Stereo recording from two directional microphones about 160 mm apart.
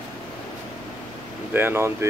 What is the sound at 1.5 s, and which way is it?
Speech, 15° right (ahead or behind).